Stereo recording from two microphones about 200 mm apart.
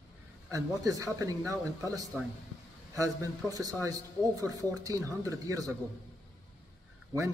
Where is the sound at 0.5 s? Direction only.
15° right (ahead or behind).